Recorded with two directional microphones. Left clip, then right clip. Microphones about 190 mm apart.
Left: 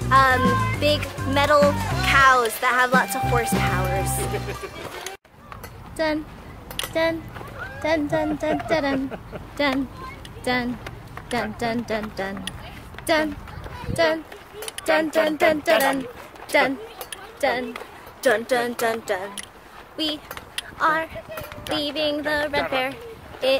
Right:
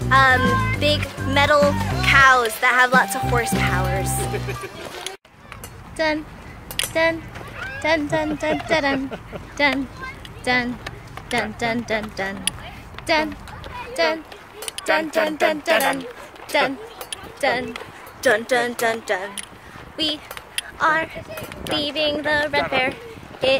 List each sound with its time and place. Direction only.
0.0 s a child's voice: 5° left (ahead or behind)
6.8 s a sound: 5° left (ahead or behind)
7.8 s speech: 10° left (ahead or behind)
13.0 s speech: 25° left (ahead or behind)
17.0 s a sound: 5° left (ahead or behind)
18.2 s speech: centre (ahead or behind)